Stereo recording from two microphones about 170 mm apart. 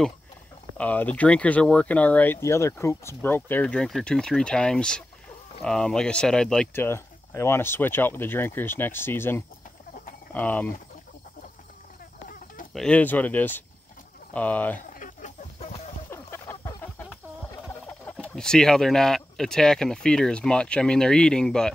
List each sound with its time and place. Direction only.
0.7 s speech: 10° left (ahead or behind)
12.7 s speech: 5° left (ahead or behind)
15.0 s chicken: 45° left (ahead or behind)
16.1 s chicken: 15° left (ahead or behind)
18.2 s speech: 5° left (ahead or behind)